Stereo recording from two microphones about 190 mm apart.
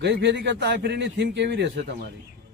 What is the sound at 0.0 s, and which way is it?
A man's voice, 65° right (ahead or behind).